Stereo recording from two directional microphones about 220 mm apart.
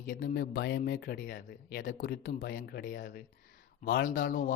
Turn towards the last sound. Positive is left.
turn(degrees=40)  # may be behind; listen again after turning